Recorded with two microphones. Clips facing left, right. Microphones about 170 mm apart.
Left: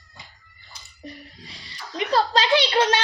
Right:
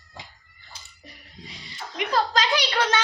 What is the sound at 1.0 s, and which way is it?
Music, 35° left (ahead or behind).